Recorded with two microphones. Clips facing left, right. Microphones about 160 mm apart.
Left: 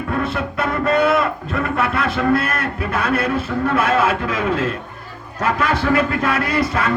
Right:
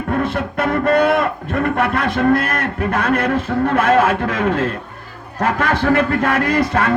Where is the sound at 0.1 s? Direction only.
50° right (ahead or behind).